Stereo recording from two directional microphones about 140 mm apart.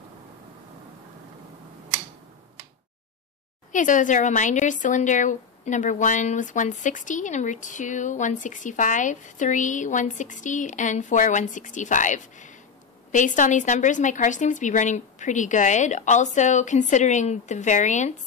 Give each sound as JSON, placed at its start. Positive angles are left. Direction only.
{"t": 3.7, "sound": "a woman's voice", "side_deg": 65}